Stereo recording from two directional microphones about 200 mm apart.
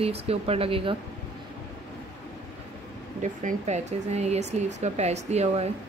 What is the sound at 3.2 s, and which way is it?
Speech, 40° right (ahead or behind).